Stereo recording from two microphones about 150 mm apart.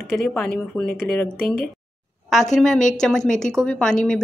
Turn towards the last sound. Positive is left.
turn(degrees=5)  # may be behind; listen again after turning